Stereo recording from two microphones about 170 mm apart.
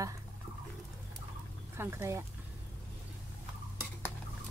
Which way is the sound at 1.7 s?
15° right (ahead or behind).